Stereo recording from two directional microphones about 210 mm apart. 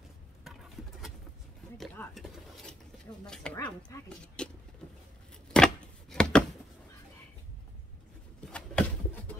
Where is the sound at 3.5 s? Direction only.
15° left (ahead or behind).